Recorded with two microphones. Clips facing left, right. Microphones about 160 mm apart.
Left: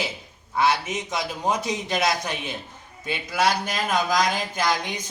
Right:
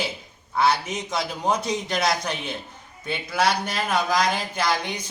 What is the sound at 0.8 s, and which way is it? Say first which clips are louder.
A man's voice: even; 5° left (ahead or behind).